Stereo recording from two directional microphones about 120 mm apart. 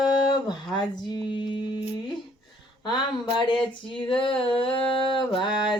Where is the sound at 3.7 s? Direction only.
45° left (ahead or behind).